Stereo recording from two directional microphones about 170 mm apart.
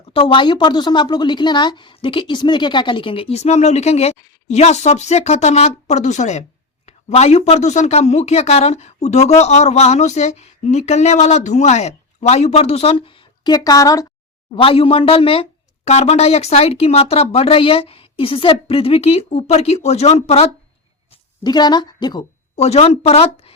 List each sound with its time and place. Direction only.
0.1 s speech: 30° left (ahead or behind)
14.5 s speech: 30° left (ahead or behind)
21.1 s a woman's voice: 25° left (ahead or behind)
22.5 s speech: 40° left (ahead or behind)